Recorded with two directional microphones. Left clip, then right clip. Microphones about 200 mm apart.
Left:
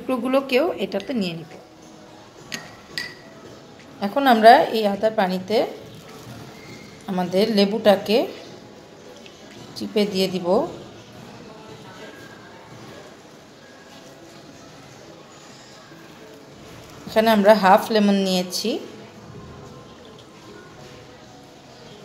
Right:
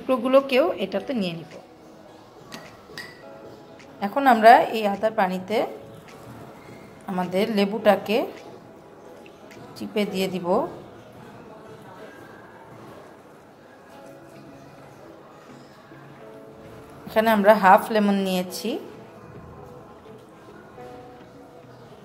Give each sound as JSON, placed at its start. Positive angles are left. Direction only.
{"t": 0.0, "sound": "a woman's voice", "side_deg": 0}
{"t": 4.0, "sound": "a woman's voice", "side_deg": 10}
{"t": 7.1, "sound": "a woman's voice", "side_deg": 10}
{"t": 9.8, "sound": "a woman's voice", "side_deg": 5}
{"t": 17.1, "sound": "a woman's voice", "side_deg": 5}